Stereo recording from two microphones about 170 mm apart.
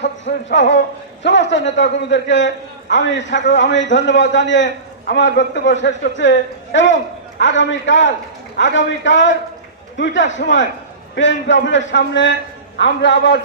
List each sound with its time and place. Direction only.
0.0 s a man's voice: 90° left